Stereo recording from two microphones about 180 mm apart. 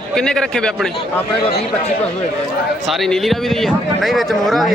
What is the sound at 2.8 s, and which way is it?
A man's voice, centre (ahead or behind).